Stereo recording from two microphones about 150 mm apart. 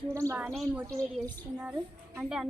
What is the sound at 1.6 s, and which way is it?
Speech, 10° right (ahead or behind).